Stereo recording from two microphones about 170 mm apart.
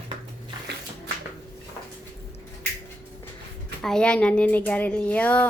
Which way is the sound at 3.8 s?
5° left (ahead or behind).